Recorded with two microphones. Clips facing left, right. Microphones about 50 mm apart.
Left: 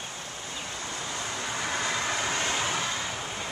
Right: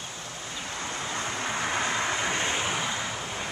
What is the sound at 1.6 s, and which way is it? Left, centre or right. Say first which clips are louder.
Vehicle: right 1 dB; right.